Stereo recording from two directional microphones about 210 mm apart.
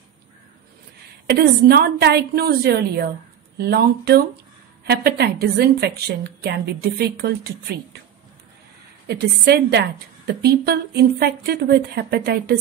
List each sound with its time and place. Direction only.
1.2 s a woman's voice: 45° right (ahead or behind)
9.0 s a woman's voice: 50° right (ahead or behind)